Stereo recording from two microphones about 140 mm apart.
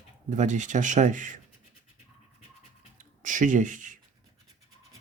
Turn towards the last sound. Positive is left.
turn(degrees=-65)  # may be behind; listen again after turning